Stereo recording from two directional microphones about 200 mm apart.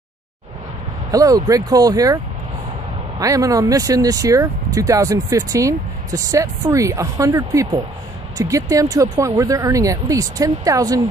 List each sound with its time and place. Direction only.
1.1 s speech: 15° right (ahead or behind)
3.2 s speech: 15° right (ahead or behind)